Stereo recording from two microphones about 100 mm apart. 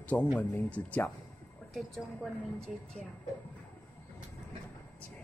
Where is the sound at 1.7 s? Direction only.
5° left (ahead or behind).